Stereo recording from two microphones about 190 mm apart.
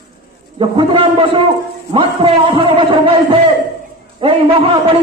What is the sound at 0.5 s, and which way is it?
A man's voice, 25° right (ahead or behind).